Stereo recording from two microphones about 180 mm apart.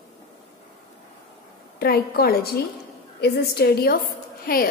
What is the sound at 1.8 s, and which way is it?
A woman's voice, 60° left (ahead or behind).